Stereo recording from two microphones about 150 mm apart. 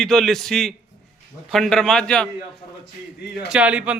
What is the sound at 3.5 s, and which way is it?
Speech, 10° right (ahead or behind).